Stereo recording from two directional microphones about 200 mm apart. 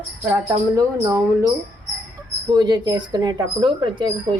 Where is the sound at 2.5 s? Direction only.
20° right (ahead or behind).